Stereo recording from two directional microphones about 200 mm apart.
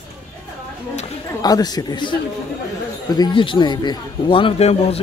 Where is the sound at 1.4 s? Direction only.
20° left (ahead or behind).